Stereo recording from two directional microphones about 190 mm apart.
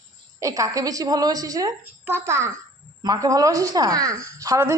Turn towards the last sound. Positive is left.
turn(degrees=-15)  # may be behind; listen again after turning